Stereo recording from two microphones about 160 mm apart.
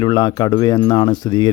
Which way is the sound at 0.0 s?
30° left (ahead or behind).